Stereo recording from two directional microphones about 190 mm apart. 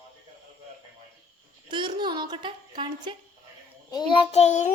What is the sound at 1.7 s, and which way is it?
Speech, 25° right (ahead or behind).